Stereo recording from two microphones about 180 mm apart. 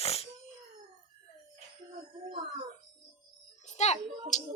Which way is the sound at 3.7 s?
40° left (ahead or behind).